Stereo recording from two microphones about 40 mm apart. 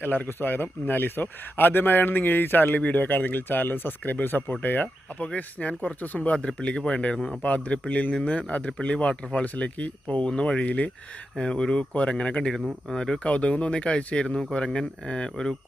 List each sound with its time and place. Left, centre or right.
0.0 s a man's voice: left
5.2 s speech: left
6.6 s speech: left
10.3 s speech: left
10.7 s speech: left
11.3 s speech: left
13.2 s speech: left